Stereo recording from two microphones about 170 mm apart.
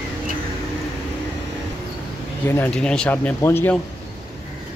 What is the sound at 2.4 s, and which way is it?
Speech, 10° left (ahead or behind).